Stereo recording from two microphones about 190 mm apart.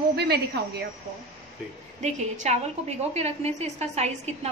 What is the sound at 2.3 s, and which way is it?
A woman's voice, 35° right (ahead or behind).